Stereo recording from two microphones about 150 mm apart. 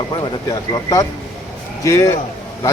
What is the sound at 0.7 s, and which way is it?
A man's voice, 25° left (ahead or behind).